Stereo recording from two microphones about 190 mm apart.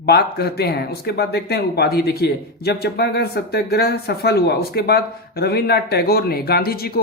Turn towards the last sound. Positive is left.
turn(degrees=55)  # may be behind; listen again after turning